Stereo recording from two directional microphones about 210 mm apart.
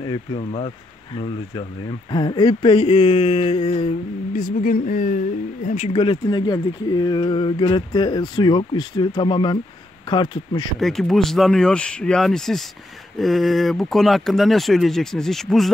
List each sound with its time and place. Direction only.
0.0 s speech: 20° left (ahead or behind)
4.3 s speech: 40° left (ahead or behind)
5.9 s speech: 20° left (ahead or behind)
10.8 s speech: centre (ahead or behind)